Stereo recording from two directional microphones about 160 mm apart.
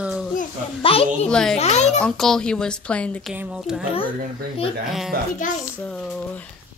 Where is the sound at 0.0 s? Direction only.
5° right (ahead or behind).